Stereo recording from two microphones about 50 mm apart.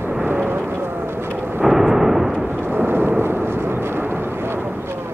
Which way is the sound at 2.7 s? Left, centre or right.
Right.